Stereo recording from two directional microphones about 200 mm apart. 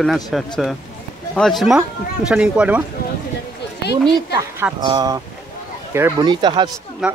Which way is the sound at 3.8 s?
55° left (ahead or behind).